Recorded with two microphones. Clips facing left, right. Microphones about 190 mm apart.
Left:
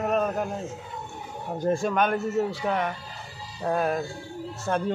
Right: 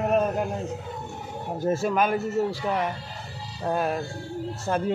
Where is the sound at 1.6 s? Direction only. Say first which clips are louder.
Even; 5° right (ahead or behind).